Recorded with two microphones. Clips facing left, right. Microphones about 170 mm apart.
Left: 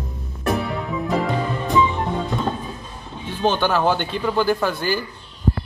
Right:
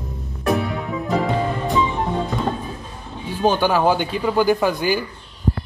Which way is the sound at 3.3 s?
10° right (ahead or behind).